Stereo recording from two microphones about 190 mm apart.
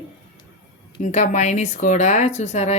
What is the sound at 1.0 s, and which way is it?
Speech, 40° left (ahead or behind).